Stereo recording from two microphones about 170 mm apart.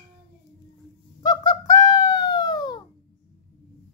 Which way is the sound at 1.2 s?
25° left (ahead or behind).